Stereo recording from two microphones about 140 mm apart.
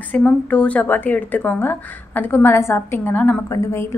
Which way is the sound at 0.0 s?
10° left (ahead or behind).